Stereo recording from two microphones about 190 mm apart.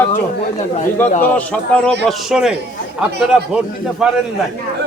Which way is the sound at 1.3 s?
5° left (ahead or behind).